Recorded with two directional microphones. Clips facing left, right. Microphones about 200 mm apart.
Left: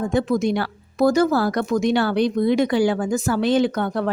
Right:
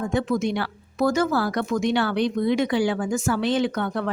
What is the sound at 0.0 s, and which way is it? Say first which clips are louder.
Speech: left 3 dB; 35° left (ahead or behind).